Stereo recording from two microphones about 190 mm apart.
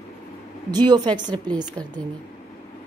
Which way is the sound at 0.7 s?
20° right (ahead or behind).